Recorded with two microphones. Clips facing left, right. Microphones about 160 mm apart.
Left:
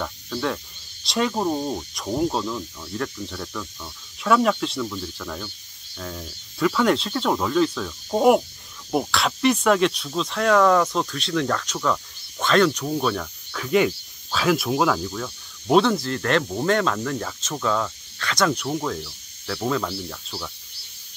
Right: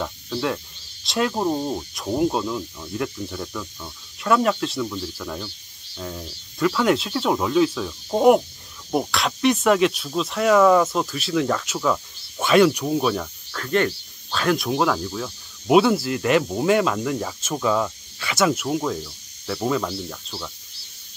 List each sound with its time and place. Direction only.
0.0 s cricket: 5° right (ahead or behind)
1.0 s speech: centre (ahead or behind)
13.6 s speech: 5° left (ahead or behind)